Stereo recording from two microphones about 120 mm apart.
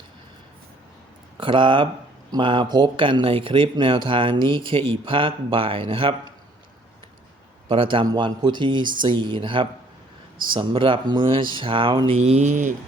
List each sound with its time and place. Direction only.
1.4 s speech: 45° right (ahead or behind)
7.7 s speech: 45° right (ahead or behind); by 12.7 s 85° right